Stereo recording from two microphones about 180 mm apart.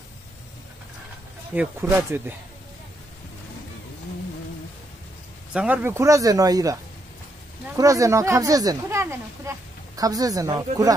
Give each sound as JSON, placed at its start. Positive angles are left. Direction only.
{"t": 1.5, "sound": "speech", "side_deg": -10}
{"t": 5.5, "sound": "speech", "side_deg": -5}